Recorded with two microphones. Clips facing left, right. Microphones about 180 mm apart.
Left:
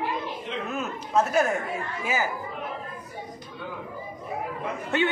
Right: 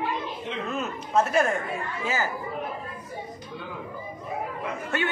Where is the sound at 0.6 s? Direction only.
Centre (ahead or behind).